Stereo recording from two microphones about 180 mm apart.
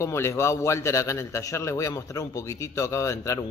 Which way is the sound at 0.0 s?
15° left (ahead or behind).